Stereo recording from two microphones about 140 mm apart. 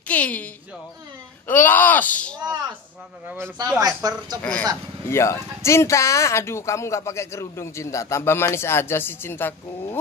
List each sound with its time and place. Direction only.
0.1 s speech: 10° left (ahead or behind)
1.5 s speech: 15° left (ahead or behind)
2.3 s speech: 25° right (ahead or behind)
3.8 s speech: 25° right (ahead or behind)
4.4 s speech: 10° left (ahead or behind)
5.1 s speech: 20° left (ahead or behind)